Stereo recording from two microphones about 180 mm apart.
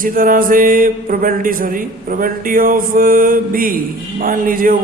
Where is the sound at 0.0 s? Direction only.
50° right (ahead or behind).